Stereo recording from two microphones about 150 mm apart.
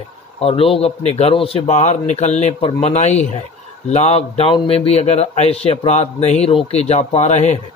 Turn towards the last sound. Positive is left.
turn(degrees=50)  # may be behind; listen again after turning